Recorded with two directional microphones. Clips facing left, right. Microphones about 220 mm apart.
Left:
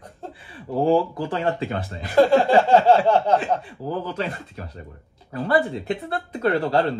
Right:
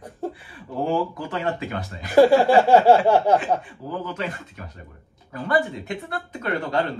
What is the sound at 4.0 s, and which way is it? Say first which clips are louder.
Speech: left 2 dB; 35° left (ahead or behind).